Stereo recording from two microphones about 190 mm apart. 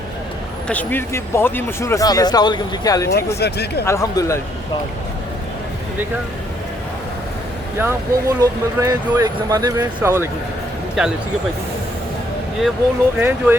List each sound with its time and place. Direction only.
0.7 s speech: 10° left (ahead or behind)
3.1 s speech: 55° left (ahead or behind)
3.8 s speech: 15° left (ahead or behind)
7.8 s speech: 15° right (ahead or behind)
11.0 s speech: centre (ahead or behind)
13.1 s speech: 10° right (ahead or behind)